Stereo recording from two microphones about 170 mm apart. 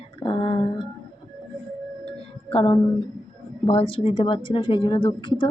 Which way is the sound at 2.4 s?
30° left (ahead or behind).